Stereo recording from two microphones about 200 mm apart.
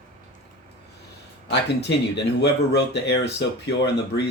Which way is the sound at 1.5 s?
60° left (ahead or behind).